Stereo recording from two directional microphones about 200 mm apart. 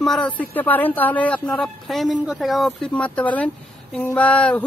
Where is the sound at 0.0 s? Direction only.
Centre (ahead or behind).